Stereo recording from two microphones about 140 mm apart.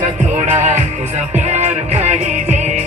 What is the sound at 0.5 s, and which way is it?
Music, 60° right (ahead or behind).